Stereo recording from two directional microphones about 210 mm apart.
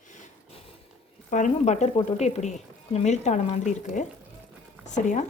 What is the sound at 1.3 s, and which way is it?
A woman's voice, 35° left (ahead or behind).